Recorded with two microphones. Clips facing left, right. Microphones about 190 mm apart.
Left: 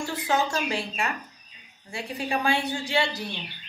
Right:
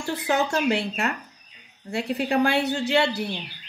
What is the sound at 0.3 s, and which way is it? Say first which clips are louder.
Speech: right 4 dB; 65° right (ahead or behind).